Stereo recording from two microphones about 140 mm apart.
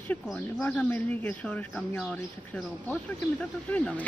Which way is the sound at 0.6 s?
10° left (ahead or behind).